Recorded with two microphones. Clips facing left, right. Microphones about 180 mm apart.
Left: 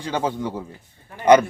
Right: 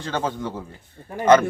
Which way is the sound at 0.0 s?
15° left (ahead or behind).